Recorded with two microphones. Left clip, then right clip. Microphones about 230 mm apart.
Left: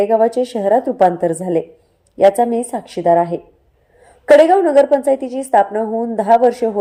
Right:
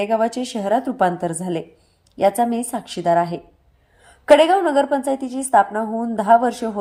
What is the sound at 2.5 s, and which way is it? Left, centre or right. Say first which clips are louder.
Speech: left 5 dB; centre.